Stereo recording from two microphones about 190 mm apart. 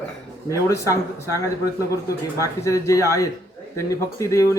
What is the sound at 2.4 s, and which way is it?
Speech, 15° left (ahead or behind).